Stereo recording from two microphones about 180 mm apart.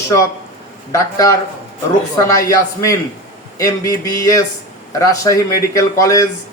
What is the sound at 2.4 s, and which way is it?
A man's voice, 15° left (ahead or behind).